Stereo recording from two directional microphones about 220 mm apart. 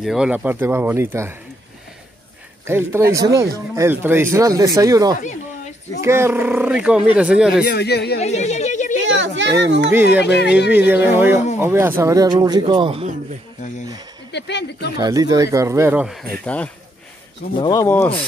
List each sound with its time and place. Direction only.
0.0 s speech: centre (ahead or behind)
2.6 s speech: 10° right (ahead or behind)
7.6 s speech: 50° left (ahead or behind)
8.2 s speech: 30° left (ahead or behind)
9.0 s children playing: 60° right (ahead or behind)
9.4 s a child's voice: 55° right (ahead or behind)
10.2 s speech: 50° left (ahead or behind)
11.1 s speech: 10° right (ahead or behind)
14.3 s speech: 50° left (ahead or behind)
15.0 s speech: 15° right (ahead or behind); by 16.7 s 5° left (ahead or behind)
17.6 s speech: 15° left (ahead or behind)